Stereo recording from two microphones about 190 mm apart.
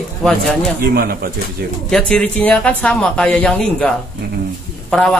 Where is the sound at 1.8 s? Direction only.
5° left (ahead or behind).